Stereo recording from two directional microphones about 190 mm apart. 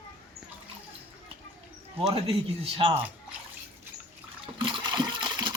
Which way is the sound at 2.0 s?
30° right (ahead or behind).